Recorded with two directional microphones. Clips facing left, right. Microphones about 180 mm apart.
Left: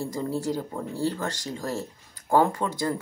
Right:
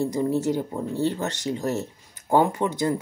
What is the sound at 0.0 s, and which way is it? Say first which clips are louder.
Speech: right 5 dB; 20° right (ahead or behind).